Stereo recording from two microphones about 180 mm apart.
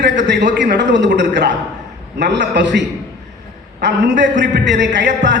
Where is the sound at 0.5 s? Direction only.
75° right (ahead or behind).